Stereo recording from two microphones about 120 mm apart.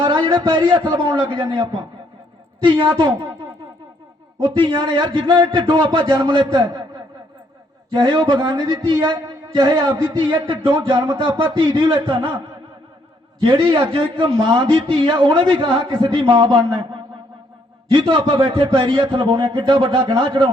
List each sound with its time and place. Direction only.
0.0 s a man's voice: 40° right (ahead or behind)
4.4 s speech: 40° right (ahead or behind)
7.9 s speech: 40° right (ahead or behind)
13.4 s a man's voice: 40° right (ahead or behind)
17.9 s a man's voice: 45° right (ahead or behind)